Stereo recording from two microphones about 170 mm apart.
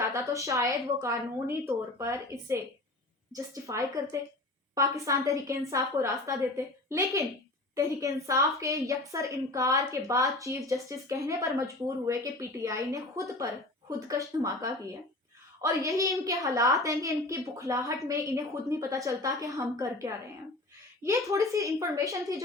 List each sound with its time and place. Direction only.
0.1 s a woman's voice: 20° right (ahead or behind)